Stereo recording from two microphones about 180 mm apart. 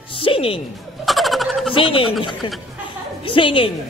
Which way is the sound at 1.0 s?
Centre (ahead or behind).